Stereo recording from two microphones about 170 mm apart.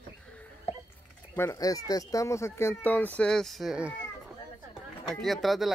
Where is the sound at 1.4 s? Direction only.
20° left (ahead or behind); by 3.9 s 5° right (ahead or behind).